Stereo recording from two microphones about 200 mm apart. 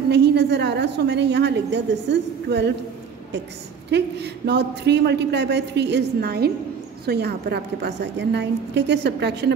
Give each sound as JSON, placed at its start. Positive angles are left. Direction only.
{"t": 0.1, "sound": "a woman's voice", "side_deg": -60}
{"t": 3.9, "sound": "a woman's voice", "side_deg": -55}